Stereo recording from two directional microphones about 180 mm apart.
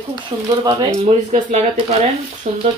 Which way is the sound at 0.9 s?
40° right (ahead or behind).